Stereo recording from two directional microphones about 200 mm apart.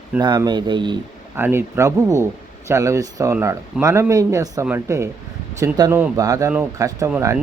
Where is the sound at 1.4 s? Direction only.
10° right (ahead or behind).